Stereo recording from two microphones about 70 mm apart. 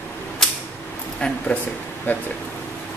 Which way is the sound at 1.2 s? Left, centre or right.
Centre.